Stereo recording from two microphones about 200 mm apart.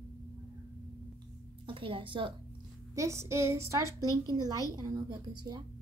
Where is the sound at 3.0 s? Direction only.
15° right (ahead or behind).